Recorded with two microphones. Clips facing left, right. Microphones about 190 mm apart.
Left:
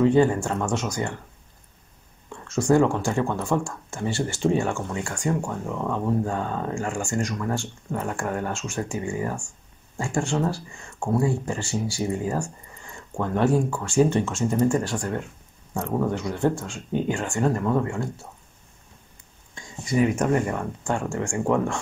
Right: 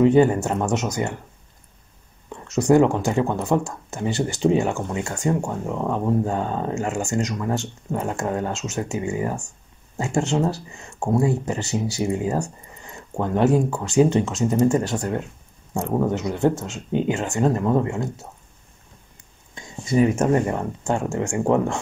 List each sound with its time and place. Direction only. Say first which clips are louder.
0.0 s speech: right 3 dB; 20° right (ahead or behind)
2.2 s a sound: right 3 dB; 20° right (ahead or behind)
3.0 s speech: right 3 dB; 20° right (ahead or behind)
19.5 s speech: right 3 dB; 25° right (ahead or behind)